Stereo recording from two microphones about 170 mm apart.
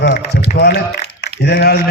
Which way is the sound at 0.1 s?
75° left (ahead or behind).